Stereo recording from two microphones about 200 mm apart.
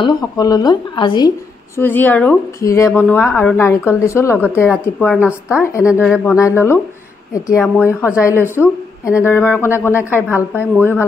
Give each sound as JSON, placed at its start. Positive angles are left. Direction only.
{"t": 0.0, "sound": "a woman's voice", "side_deg": 20}
{"t": 1.8, "sound": "a woman's voice", "side_deg": 10}
{"t": 5.9, "sound": "speech", "side_deg": -5}
{"t": 6.1, "sound": "a woman's voice", "side_deg": 15}
{"t": 7.6, "sound": "speech", "side_deg": -5}
{"t": 8.2, "sound": "a woman's voice", "side_deg": 15}
{"t": 10.0, "sound": "a woman's voice", "side_deg": -10}
{"t": 10.5, "sound": "a woman's voice", "side_deg": 10}